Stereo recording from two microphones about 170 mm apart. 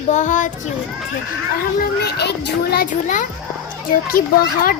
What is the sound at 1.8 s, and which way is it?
A child's voice, 70° left (ahead or behind).